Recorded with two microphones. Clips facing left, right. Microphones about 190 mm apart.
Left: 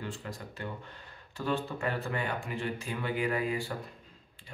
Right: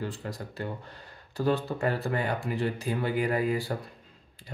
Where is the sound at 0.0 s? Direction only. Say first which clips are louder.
Right 5 dB; 35° right (ahead or behind).